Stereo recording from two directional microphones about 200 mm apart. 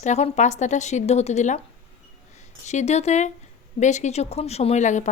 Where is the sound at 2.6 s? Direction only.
35° left (ahead or behind).